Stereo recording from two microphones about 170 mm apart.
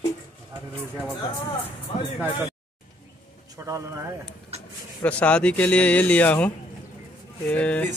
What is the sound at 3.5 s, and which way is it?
Speech, 20° right (ahead or behind).